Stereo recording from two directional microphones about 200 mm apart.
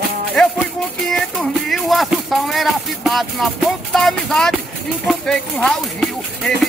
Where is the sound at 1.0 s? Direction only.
Centre (ahead or behind).